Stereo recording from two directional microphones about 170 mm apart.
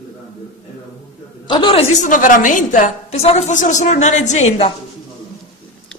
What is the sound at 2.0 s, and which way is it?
A woman's voice, 50° left (ahead or behind).